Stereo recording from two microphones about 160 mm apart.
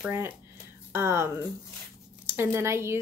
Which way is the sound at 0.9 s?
15° right (ahead or behind).